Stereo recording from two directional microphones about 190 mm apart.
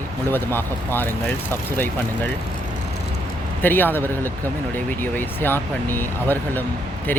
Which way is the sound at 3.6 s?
10° left (ahead or behind).